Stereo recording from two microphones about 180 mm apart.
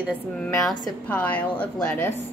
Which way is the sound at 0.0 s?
5° left (ahead or behind).